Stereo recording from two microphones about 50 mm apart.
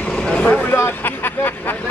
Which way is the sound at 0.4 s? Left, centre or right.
Left.